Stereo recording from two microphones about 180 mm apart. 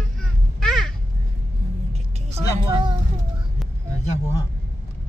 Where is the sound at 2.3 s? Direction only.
25° right (ahead or behind).